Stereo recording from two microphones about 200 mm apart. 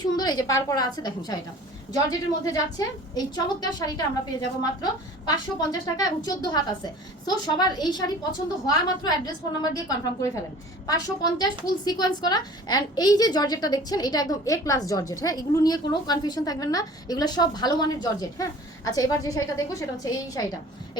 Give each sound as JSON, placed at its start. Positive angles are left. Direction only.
{"t": 0.0, "sound": "a woman's voice", "side_deg": 20}